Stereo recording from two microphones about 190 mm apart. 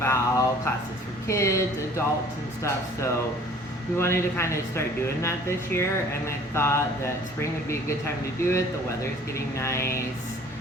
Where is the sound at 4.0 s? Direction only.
15° left (ahead or behind).